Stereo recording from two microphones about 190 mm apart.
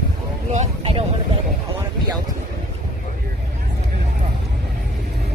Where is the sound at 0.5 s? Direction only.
35° right (ahead or behind).